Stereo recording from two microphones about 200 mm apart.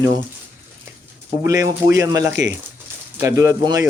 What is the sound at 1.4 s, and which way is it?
Speech, 15° right (ahead or behind).